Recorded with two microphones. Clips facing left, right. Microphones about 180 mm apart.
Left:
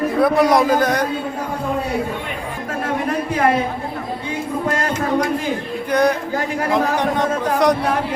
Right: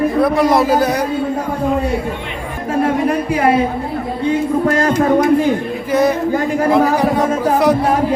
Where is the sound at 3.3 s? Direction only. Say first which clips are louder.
Right 1 dB; 10° right (ahead or behind).